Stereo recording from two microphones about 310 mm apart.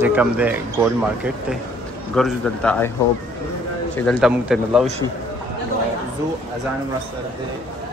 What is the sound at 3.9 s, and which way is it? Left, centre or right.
Speech, centre.